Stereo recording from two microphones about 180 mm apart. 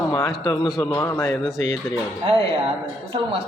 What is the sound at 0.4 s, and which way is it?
Speech, 25° left (ahead or behind).